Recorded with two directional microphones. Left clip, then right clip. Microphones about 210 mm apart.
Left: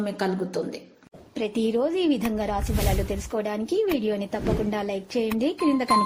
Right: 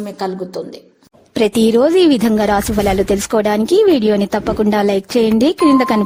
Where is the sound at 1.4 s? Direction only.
60° right (ahead or behind).